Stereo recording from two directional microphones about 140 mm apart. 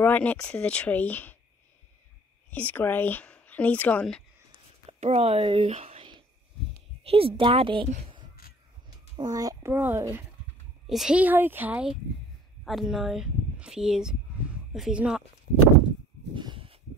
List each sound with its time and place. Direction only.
0.0 s speech: 10° left (ahead or behind)
2.5 s speech: 15° left (ahead or behind)
4.8 s speech: 45° right (ahead or behind)
9.1 s speech: 25° right (ahead or behind)
9.7 s a child's voice: 15° right (ahead or behind)
10.9 s a child's voice: 5° right (ahead or behind)
16.3 s a sound: 35° right (ahead or behind)